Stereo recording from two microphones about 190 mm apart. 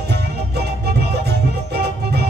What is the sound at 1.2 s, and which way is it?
Music, 60° right (ahead or behind).